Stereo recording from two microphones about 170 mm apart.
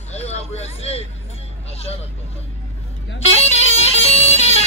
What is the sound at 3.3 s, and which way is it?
Music, 40° left (ahead or behind).